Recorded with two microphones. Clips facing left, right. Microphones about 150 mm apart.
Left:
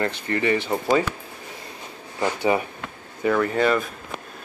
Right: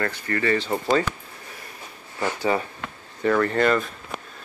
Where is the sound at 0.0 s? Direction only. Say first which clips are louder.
Left 2 dB; 20° left (ahead or behind).